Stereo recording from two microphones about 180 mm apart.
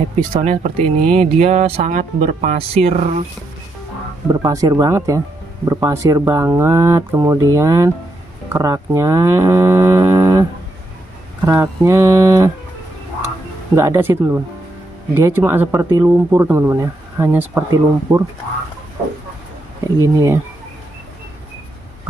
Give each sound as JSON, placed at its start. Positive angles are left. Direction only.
{"t": 0.4, "sound": "speech", "side_deg": -40}
{"t": 4.3, "sound": "speech", "side_deg": -20}
{"t": 11.4, "sound": "speech", "side_deg": -15}
{"t": 13.7, "sound": "speech", "side_deg": -15}
{"t": 20.0, "sound": "speech", "side_deg": -15}